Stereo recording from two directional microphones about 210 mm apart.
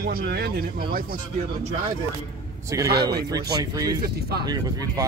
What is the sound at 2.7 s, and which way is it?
Speech, 15° right (ahead or behind).